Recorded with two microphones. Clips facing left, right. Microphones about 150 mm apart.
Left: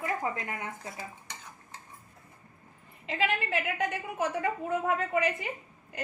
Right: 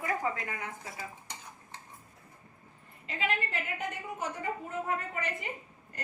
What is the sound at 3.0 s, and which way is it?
A woman's voice, 85° left.